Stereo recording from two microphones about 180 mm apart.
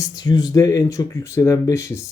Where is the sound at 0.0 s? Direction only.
20° left (ahead or behind).